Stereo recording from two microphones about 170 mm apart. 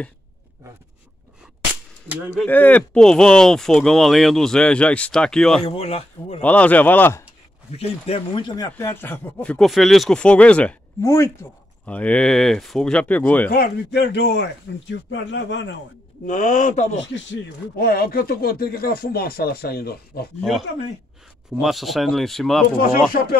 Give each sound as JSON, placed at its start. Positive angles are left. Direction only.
{"t": 2.3, "sound": "speech", "side_deg": 10}
{"t": 5.6, "sound": "speech", "side_deg": 35}
{"t": 6.4, "sound": "speech", "side_deg": 10}
{"t": 7.7, "sound": "speech", "side_deg": 35}
{"t": 13.5, "sound": "a man's voice", "side_deg": 65}
{"t": 16.3, "sound": "speech", "side_deg": 45}
{"t": 17.7, "sound": "speech", "side_deg": 60}
{"t": 21.5, "sound": "speech", "side_deg": 0}